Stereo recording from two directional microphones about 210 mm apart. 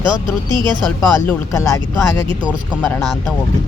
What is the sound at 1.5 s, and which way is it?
Speech, 15° left (ahead or behind).